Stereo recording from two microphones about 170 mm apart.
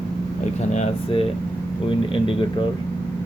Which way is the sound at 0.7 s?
40° left (ahead or behind).